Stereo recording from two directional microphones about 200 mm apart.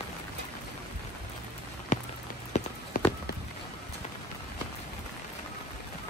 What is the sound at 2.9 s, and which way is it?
Run, 45° left (ahead or behind).